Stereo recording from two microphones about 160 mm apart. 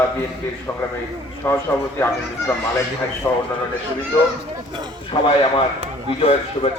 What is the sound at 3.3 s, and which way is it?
Speech, 20° left (ahead or behind).